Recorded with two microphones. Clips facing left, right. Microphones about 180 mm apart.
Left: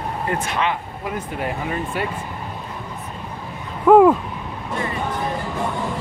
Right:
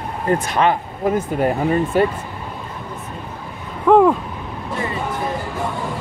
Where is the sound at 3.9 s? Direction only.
5° left (ahead or behind).